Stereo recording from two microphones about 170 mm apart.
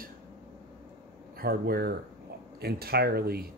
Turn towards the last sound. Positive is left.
turn(degrees=-65)  # may be behind; listen again after turning